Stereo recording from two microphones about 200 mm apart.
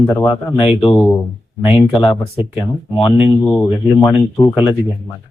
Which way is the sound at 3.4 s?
5° left (ahead or behind).